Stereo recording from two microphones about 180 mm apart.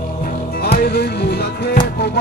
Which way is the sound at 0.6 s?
60° left (ahead or behind).